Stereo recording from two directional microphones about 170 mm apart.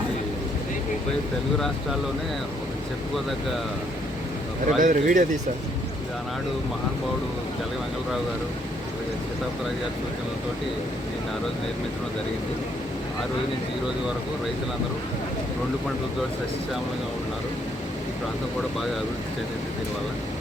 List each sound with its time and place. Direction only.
4.8 s speech: 50° right (ahead or behind)